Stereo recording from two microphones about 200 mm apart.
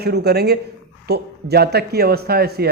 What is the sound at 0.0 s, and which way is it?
A man's voice, 55° right (ahead or behind).